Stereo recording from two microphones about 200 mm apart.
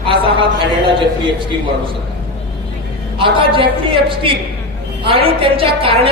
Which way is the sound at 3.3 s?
25° right (ahead or behind).